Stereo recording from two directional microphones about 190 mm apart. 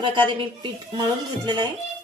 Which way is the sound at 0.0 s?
25° right (ahead or behind).